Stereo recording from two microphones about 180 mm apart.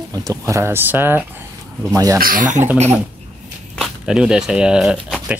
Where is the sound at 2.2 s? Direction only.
50° right (ahead or behind).